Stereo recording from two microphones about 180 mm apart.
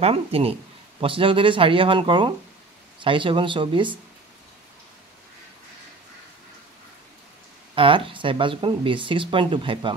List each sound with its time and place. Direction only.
0.0 s speech: 35° right (ahead or behind)
7.7 s speech: 30° right (ahead or behind)